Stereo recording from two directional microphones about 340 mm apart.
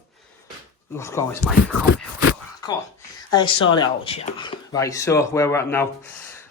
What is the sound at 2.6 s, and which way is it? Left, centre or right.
Speech, centre.